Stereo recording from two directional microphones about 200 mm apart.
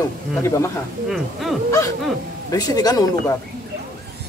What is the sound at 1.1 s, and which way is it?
Speech, centre (ahead or behind).